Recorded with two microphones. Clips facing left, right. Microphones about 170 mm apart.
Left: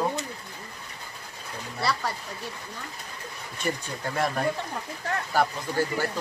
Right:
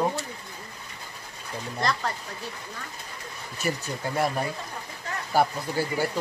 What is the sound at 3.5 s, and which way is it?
Speech, 5° right (ahead or behind).